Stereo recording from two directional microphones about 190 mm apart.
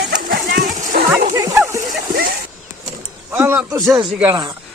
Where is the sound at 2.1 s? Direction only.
50° right (ahead or behind).